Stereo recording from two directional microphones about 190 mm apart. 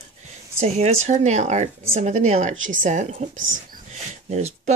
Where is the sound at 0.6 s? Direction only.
35° right (ahead or behind).